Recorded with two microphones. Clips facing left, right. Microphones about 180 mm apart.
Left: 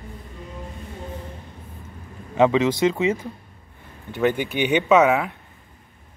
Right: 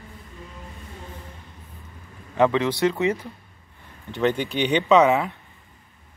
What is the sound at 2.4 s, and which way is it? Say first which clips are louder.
Speech: left 2 dB; 20° left (ahead or behind).